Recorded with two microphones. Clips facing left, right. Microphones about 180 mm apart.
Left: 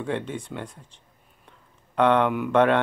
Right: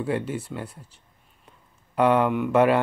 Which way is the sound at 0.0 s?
5° right (ahead or behind).